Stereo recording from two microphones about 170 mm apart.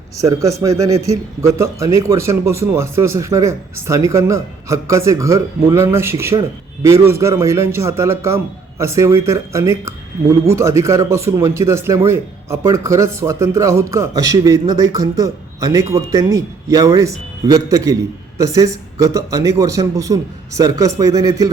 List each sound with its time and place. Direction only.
0.2 s a man's voice: 20° right (ahead or behind)